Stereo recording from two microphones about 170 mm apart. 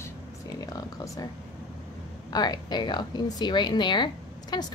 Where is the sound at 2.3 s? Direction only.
25° left (ahead or behind).